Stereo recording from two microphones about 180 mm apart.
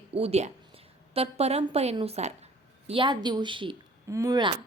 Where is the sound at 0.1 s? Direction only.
35° right (ahead or behind).